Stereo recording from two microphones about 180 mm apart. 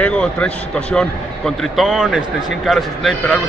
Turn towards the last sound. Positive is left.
turn(degrees=0)  # may be behind; listen again after turning